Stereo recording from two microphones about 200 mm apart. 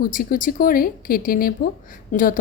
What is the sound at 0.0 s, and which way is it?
Speech, 45° left (ahead or behind).